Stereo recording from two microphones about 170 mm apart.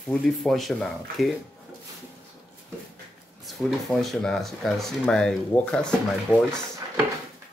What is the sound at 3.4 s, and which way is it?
Speech, centre (ahead or behind).